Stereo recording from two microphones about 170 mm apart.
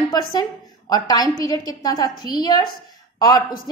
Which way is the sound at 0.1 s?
25° left (ahead or behind).